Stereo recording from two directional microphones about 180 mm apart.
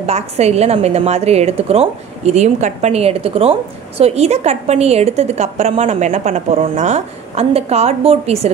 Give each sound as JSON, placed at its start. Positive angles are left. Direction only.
{"t": 0.0, "sound": "a woman's voice", "side_deg": -35}